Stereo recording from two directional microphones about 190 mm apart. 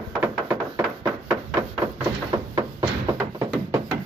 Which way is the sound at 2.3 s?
20° right (ahead or behind).